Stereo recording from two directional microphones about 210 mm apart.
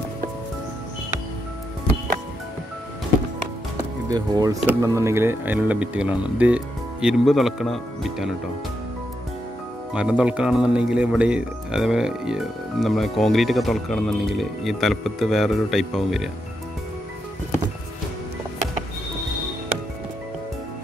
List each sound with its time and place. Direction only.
4.1 s speech: 15° right (ahead or behind); by 8.3 s centre (ahead or behind)
9.9 s speech: 5° right (ahead or behind)